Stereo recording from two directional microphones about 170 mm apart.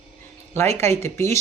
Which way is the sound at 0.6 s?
15° left (ahead or behind).